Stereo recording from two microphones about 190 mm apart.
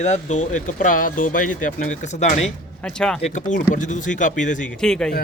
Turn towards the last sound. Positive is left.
turn(degrees=5)  # may be behind; listen again after turning